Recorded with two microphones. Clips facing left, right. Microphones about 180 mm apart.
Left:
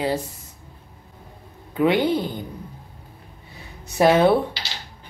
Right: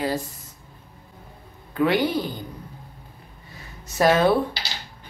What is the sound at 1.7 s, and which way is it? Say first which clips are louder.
Speech: left 2 dB; 20° left (ahead or behind).